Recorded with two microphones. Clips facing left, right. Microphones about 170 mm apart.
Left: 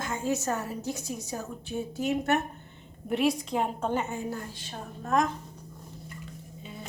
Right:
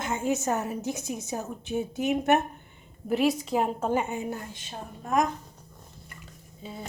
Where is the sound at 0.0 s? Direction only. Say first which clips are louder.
Right 2 dB; 20° right (ahead or behind).